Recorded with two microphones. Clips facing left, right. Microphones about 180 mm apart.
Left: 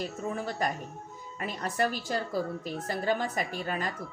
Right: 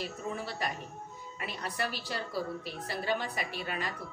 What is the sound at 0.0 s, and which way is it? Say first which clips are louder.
A woman's voice: left 4 dB; 45° left (ahead or behind).